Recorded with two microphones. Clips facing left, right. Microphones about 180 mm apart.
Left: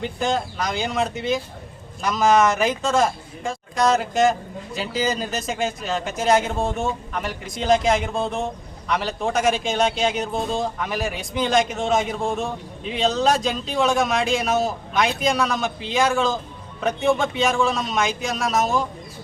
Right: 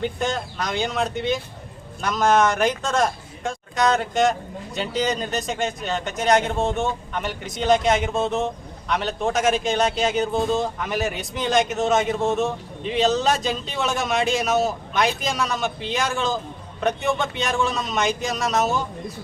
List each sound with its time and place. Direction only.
0.0 s speech: centre (ahead or behind)